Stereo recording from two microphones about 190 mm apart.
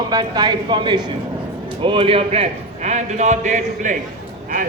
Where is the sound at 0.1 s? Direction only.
20° right (ahead or behind).